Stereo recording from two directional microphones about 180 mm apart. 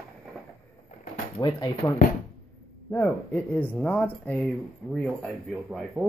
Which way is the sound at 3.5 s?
10° left (ahead or behind).